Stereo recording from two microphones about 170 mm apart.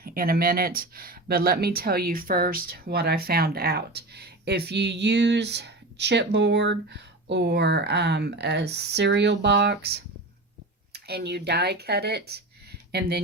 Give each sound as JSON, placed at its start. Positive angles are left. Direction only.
{"t": 0.0, "sound": "speech", "side_deg": -60}